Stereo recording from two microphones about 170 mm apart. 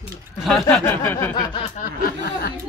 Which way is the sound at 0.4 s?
Centre (ahead or behind).